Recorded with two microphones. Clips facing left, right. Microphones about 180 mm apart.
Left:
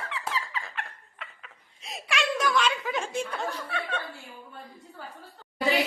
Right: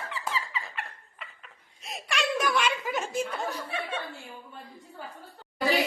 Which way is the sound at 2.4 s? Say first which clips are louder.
Left 1 dB; 10° right (ahead or behind).